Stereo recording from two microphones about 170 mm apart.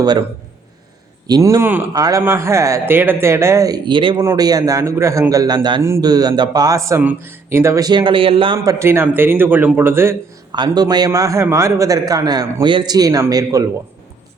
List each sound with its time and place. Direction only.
0.0 s a man's voice: 25° right (ahead or behind)
1.3 s a man's voice: 20° right (ahead or behind)
8.5 s speech: 15° right (ahead or behind)
10.5 s a man's voice: 25° right (ahead or behind)